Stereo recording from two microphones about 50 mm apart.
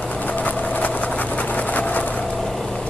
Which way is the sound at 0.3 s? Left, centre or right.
Left.